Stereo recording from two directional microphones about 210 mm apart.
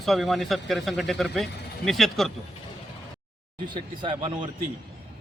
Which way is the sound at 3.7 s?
20° right (ahead or behind).